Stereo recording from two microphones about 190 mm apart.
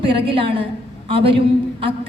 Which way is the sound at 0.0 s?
30° right (ahead or behind).